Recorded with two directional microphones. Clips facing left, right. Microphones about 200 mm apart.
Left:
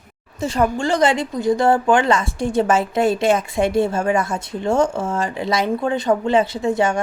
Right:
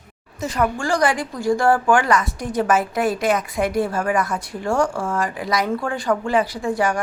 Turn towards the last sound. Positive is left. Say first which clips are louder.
# left 3 dB
turn(degrees=25)  # may be behind; listen again after turning